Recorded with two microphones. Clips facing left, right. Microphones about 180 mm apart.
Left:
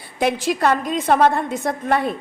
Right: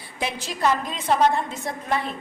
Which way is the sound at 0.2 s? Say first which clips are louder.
Left 7 dB; 60° left (ahead or behind).